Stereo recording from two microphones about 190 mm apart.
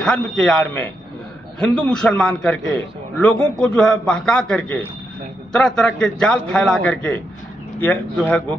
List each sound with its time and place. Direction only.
0.0 s a man's voice: 5° left (ahead or behind)